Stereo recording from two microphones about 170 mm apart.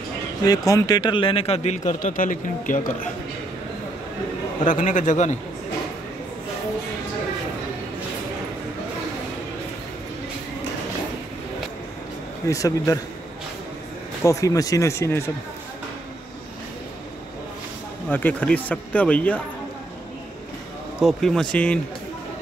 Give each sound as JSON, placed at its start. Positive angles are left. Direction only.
{"t": 0.5, "sound": "a man's voice", "side_deg": 20}
{"t": 4.6, "sound": "speech", "side_deg": 50}
{"t": 12.4, "sound": "speech", "side_deg": 20}
{"t": 14.2, "sound": "speech", "side_deg": 20}
{"t": 18.1, "sound": "speech", "side_deg": 10}
{"t": 21.0, "sound": "speech", "side_deg": 5}